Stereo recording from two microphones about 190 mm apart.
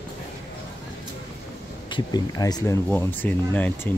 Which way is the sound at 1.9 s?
20° left (ahead or behind).